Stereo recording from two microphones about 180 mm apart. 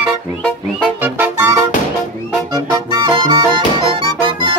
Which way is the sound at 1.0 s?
10° right (ahead or behind).